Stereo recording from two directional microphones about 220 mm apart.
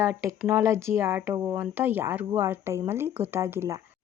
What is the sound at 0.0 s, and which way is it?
Speech, 10° right (ahead or behind).